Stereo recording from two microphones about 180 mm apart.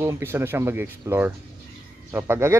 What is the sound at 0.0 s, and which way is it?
A man's voice, 15° right (ahead or behind).